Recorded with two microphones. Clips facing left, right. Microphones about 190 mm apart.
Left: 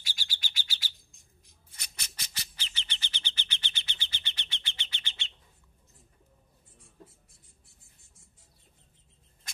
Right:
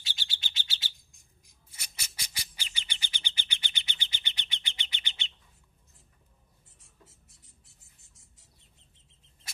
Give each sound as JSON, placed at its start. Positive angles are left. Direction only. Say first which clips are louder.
{"t": 0.0, "sound": "bird", "louder": "even", "side_deg": -25}
{"t": 1.7, "sound": "bird", "louder": "even", "side_deg": -10}